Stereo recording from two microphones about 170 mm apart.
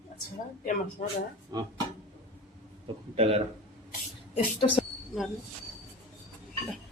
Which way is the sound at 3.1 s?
35° right (ahead or behind).